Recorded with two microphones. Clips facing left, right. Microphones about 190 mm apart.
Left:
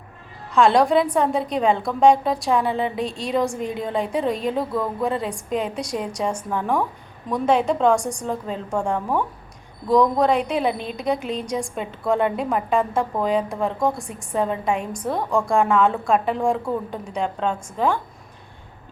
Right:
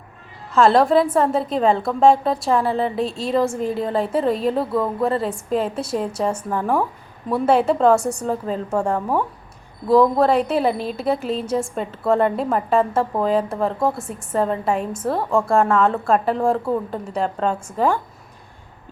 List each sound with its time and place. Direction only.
0.5 s a woman's voice: centre (ahead or behind)
10.7 s a woman's voice: 40° right (ahead or behind)
10.9 s a woman's voice: 5° right (ahead or behind)